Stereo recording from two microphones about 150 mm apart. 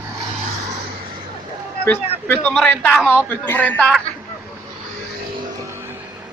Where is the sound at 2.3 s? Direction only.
10° left (ahead or behind).